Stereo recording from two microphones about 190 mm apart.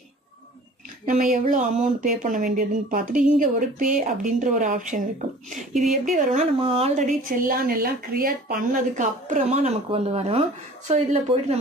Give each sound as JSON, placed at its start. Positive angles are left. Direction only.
{"t": 1.0, "sound": "speech", "side_deg": -45}
{"t": 6.0, "sound": "a woman's voice", "side_deg": -40}